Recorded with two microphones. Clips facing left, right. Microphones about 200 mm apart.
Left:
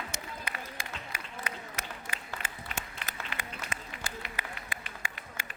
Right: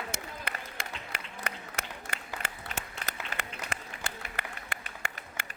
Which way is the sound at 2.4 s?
45° right (ahead or behind).